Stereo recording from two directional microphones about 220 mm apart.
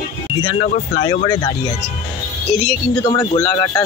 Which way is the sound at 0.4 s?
20° left (ahead or behind).